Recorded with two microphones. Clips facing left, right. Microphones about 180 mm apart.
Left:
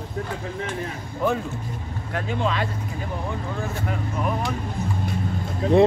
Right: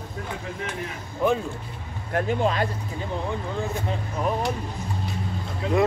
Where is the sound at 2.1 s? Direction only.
45° right (ahead or behind).